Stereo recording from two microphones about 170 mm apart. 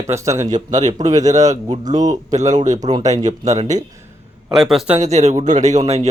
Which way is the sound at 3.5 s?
45° right (ahead or behind).